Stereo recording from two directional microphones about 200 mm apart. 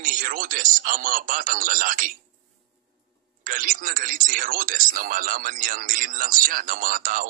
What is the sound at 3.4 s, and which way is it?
Speech, 45° right (ahead or behind).